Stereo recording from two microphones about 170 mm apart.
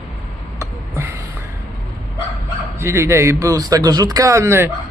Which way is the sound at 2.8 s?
15° right (ahead or behind).